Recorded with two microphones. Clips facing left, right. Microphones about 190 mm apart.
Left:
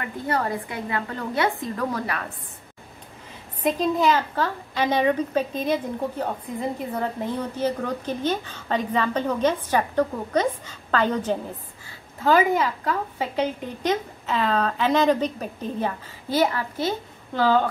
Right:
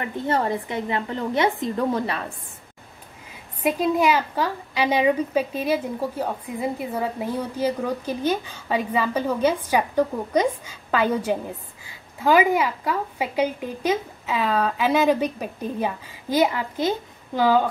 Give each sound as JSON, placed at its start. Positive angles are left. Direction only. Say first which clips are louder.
{"t": 0.0, "sound": "a woman's voice", "louder": "right 2 dB", "side_deg": -25}
{"t": 3.6, "sound": "a woman's voice", "louder": "right 1 dB", "side_deg": -10}